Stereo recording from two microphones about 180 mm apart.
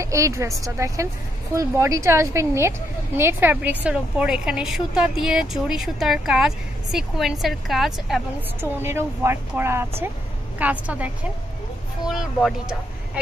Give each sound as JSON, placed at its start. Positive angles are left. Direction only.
{"t": 0.0, "sound": "a woman's voice", "side_deg": -15}
{"t": 8.5, "sound": "a woman's voice", "side_deg": -15}
{"t": 12.1, "sound": "speech", "side_deg": 0}